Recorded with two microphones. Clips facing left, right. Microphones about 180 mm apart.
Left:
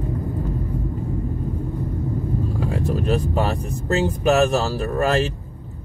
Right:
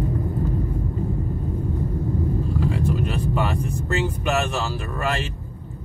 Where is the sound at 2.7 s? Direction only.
40° left (ahead or behind).